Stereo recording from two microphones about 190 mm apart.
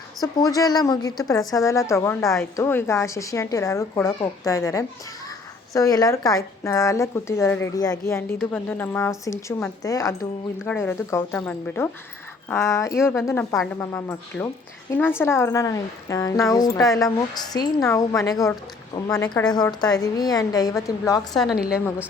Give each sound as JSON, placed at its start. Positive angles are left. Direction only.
{"t": 0.3, "sound": "a woman's voice", "side_deg": 20}
{"t": 21.3, "sound": "a woman's voice", "side_deg": 0}